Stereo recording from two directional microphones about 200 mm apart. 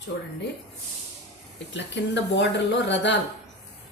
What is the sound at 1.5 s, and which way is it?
Speech, 60° left (ahead or behind).